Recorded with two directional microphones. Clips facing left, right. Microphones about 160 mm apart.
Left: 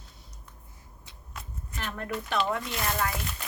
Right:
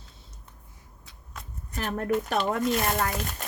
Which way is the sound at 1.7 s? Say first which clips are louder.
Right 8 dB; 45° right (ahead or behind).